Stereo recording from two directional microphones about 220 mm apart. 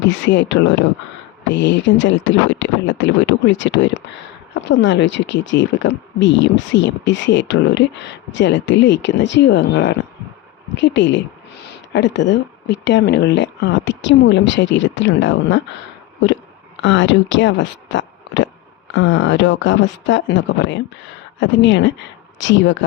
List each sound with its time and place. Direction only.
0.0 s speech: 55° left (ahead or behind)
16.8 s speech: 55° left (ahead or behind)